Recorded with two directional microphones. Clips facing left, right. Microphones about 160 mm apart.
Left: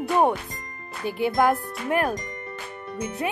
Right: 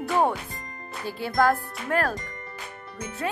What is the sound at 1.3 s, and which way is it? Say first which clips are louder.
Speech: right 2 dB; 20° left (ahead or behind).